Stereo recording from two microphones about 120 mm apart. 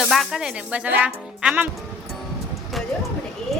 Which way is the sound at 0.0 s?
Centre (ahead or behind).